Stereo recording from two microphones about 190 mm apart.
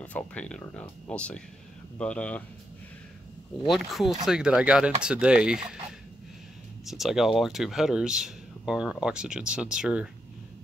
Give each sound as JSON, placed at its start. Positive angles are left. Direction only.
{"t": 0.0, "sound": "speech", "side_deg": 5}
{"t": 3.6, "sound": "speech", "side_deg": 0}
{"t": 6.9, "sound": "speech", "side_deg": 0}